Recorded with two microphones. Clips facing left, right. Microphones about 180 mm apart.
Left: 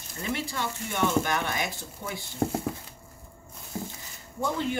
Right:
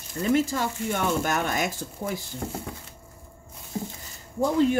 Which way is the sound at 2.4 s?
45° left (ahead or behind).